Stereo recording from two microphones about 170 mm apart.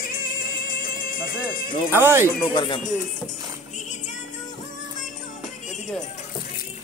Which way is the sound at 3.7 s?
45° left (ahead or behind).